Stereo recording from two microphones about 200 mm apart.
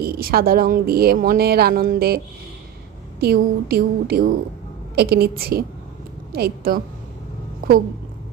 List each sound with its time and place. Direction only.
0.0 s a woman's voice: 50° right (ahead or behind)